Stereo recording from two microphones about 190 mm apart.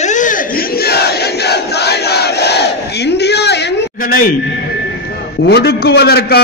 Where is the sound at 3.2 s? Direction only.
60° left (ahead or behind).